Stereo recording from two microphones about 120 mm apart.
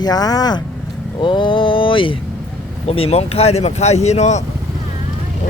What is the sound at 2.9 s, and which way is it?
Speech, 60° left (ahead or behind).